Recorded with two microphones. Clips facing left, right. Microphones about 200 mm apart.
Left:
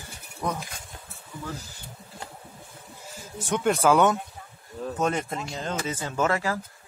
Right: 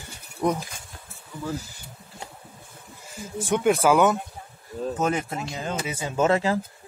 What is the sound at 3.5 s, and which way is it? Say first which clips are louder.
A man's voice: right 2 dB; 10° right (ahead or behind).